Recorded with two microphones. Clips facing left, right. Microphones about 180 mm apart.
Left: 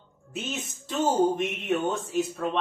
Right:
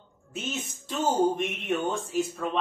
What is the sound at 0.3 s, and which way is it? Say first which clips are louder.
Speech: even; 5° left (ahead or behind).